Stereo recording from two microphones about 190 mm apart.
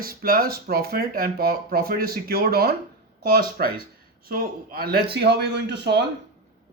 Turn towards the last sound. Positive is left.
turn(degrees=-65)  # may be behind; listen again after turning